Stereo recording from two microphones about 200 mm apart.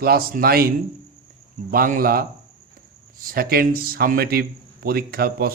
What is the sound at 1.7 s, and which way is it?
Speech, 45° right (ahead or behind).